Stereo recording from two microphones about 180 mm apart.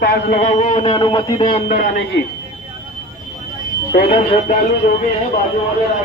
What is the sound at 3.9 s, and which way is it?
Speech, 55° left (ahead or behind).